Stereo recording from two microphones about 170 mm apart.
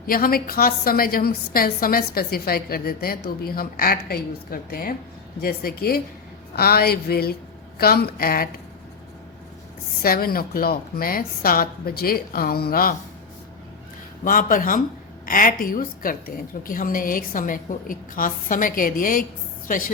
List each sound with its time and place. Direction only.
0.1 s a woman's voice: 60° left (ahead or behind)
10.0 s a woman's voice: 60° left (ahead or behind)
14.3 s a woman's voice: 55° left (ahead or behind)